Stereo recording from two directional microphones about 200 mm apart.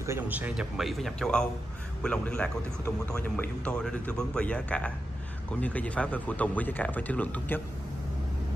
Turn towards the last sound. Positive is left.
turn(degrees=10)  # may be behind; listen again after turning